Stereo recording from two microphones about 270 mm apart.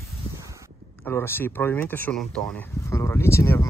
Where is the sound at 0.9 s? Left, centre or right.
Centre.